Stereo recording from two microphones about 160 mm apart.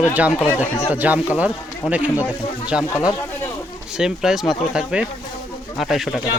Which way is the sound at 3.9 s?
5° right (ahead or behind).